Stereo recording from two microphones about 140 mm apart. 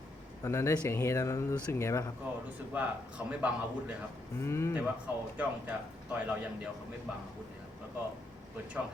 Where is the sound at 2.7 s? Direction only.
10° right (ahead or behind).